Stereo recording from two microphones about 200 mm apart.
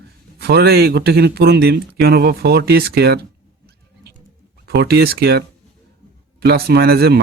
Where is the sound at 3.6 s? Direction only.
55° right (ahead or behind).